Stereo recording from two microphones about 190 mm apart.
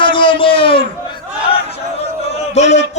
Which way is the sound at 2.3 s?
35° left (ahead or behind).